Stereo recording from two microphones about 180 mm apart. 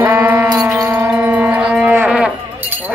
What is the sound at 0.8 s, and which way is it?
Livestock, 20° right (ahead or behind).